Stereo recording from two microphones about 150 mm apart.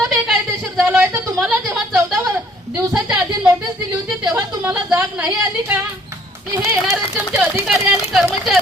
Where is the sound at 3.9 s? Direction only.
20° right (ahead or behind).